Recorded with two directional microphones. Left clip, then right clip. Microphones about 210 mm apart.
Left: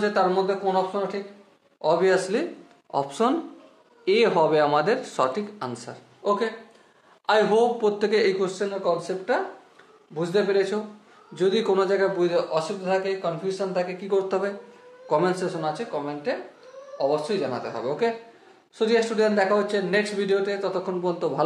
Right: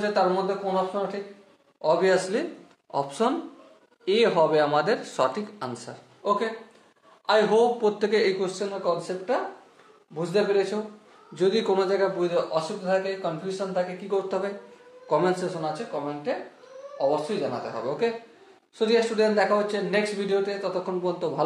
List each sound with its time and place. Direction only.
0.0 s a man's voice: 30° left (ahead or behind)
1.8 s a man's voice: 30° left (ahead or behind)
11.3 s a man's voice: 15° left (ahead or behind)
12.2 s a man's voice: 35° left (ahead or behind)
17.4 s a man's voice: 30° left (ahead or behind)